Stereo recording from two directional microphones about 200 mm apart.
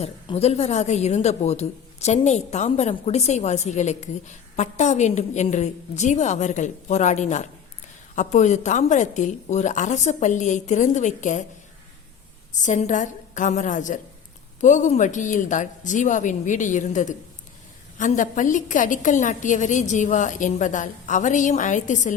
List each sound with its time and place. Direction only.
0.0 s a woman's voice: 30° left (ahead or behind)
12.6 s a woman's voice: 40° left (ahead or behind)